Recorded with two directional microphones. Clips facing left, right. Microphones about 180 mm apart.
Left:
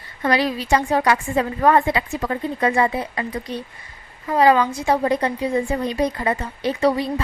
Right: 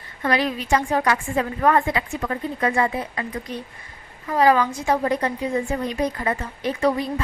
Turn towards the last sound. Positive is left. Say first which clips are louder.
# left 2 dB
turn(degrees=30)  # may be behind; listen again after turning